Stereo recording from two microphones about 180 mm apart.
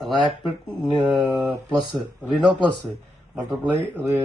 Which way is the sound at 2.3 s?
25° right (ahead or behind).